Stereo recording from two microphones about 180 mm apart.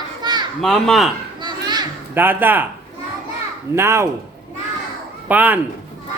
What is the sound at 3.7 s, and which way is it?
Speech, 15° right (ahead or behind).